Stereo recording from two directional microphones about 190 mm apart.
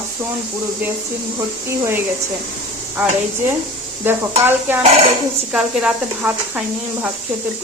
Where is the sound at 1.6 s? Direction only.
15° right (ahead or behind).